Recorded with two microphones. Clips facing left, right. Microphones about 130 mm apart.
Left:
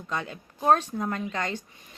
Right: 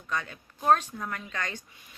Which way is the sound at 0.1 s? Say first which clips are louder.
Left 1 dB; 25° left (ahead or behind).